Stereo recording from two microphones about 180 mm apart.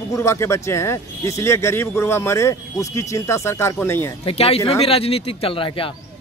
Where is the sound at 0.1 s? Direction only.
15° left (ahead or behind).